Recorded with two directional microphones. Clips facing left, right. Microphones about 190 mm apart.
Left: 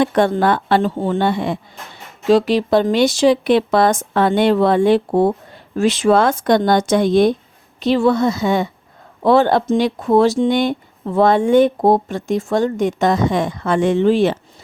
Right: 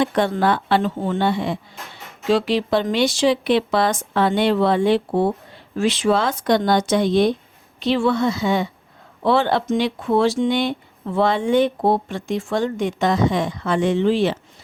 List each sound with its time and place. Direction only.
0.0 s speech: 50° left (ahead or behind)
0.8 s speech: 35° left (ahead or behind)
1.2 s speech: 50° left (ahead or behind)